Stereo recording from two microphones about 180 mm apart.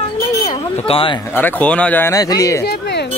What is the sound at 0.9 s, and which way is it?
Speech, 30° left (ahead or behind).